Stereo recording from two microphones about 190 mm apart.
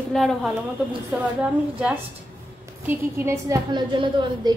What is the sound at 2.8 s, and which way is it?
A woman's voice, 15° right (ahead or behind).